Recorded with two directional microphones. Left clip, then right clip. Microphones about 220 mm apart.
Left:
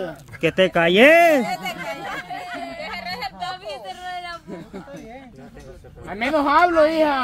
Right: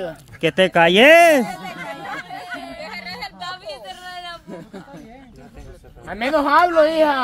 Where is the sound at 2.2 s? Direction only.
10° right (ahead or behind).